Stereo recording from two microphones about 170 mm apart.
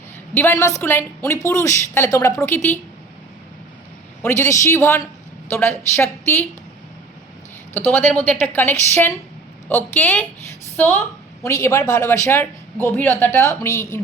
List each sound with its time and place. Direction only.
0.3 s speech: 15° left (ahead or behind)
4.2 s a woman's voice: 15° left (ahead or behind)
7.7 s a woman's voice: 15° left (ahead or behind)